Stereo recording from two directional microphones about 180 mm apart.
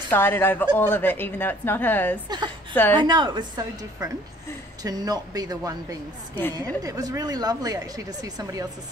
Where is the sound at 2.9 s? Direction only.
25° right (ahead or behind).